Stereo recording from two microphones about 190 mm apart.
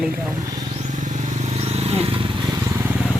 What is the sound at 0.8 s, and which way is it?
Vehicle, 40° right (ahead or behind).